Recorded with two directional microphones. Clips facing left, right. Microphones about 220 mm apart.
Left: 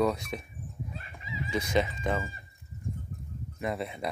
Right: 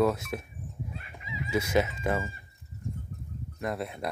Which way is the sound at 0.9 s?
35° left (ahead or behind).